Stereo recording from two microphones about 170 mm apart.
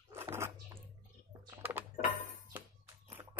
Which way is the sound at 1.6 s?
10° right (ahead or behind).